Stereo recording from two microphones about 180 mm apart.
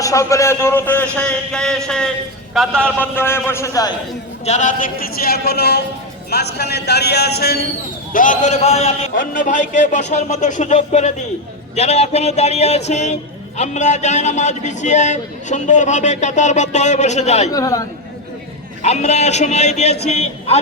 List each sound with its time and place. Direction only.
0.0 s a man's voice: 15° left (ahead or behind)
4.4 s a man's voice: 40° left (ahead or behind); by 7.6 s 60° left (ahead or behind)
8.1 s a man's voice: 45° left (ahead or behind)
17.5 s speech: 20° left (ahead or behind)
18.8 s a man's voice: 40° left (ahead or behind)